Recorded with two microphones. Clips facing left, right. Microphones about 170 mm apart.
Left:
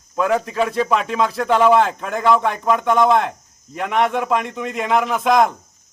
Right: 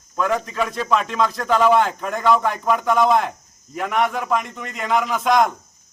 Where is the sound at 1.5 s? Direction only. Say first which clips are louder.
Left 2 dB; 25° left (ahead or behind).